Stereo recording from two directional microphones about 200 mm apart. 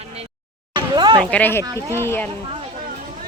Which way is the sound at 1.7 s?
15° right (ahead or behind).